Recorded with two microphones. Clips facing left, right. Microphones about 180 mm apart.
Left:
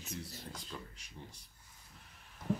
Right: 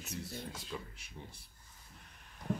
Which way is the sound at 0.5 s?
5° right (ahead or behind).